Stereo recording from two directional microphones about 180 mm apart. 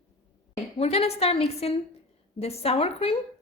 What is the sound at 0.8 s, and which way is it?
A woman's voice, 35° left (ahead or behind).